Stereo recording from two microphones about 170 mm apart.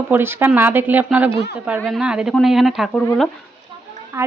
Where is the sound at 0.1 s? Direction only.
15° right (ahead or behind).